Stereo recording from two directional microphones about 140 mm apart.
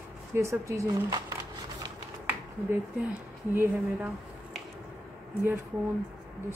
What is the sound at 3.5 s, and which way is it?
Speech, 15° right (ahead or behind).